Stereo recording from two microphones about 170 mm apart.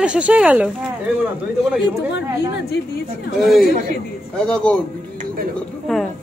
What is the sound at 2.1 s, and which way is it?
A woman's voice, 90° left.